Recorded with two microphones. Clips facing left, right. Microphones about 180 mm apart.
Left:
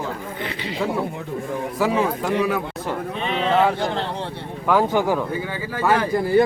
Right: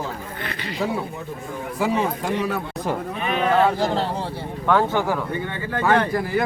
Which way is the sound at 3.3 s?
25° left (ahead or behind).